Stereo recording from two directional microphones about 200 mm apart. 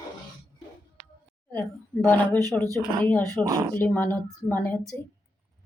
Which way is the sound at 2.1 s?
10° left (ahead or behind).